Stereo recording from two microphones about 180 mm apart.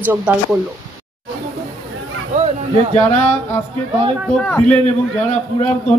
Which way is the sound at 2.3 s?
40° right (ahead or behind).